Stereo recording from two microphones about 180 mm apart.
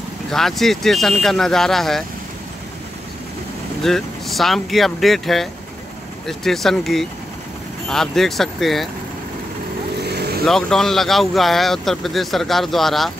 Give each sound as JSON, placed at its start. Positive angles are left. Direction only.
{"t": 0.3, "sound": "speech", "side_deg": 0}
{"t": 3.8, "sound": "speech", "side_deg": 0}
{"t": 10.0, "sound": "vehicle", "side_deg": -65}
{"t": 10.4, "sound": "speech", "side_deg": 0}